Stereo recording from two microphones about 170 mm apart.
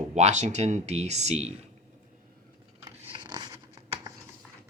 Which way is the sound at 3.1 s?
25° right (ahead or behind).